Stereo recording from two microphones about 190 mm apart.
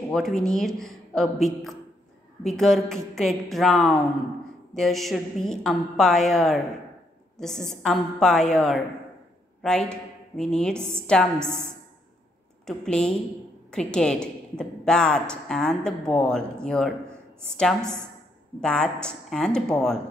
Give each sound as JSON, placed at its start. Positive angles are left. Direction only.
{"t": 0.1, "sound": "a woman's voice", "side_deg": 0}
{"t": 12.6, "sound": "a woman's voice", "side_deg": 5}